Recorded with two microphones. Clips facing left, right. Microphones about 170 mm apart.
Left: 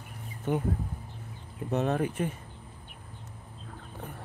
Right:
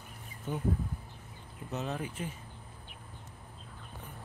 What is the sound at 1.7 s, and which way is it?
Speech, 55° left (ahead or behind).